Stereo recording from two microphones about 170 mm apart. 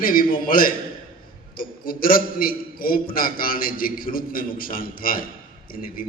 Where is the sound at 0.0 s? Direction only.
55° left (ahead or behind).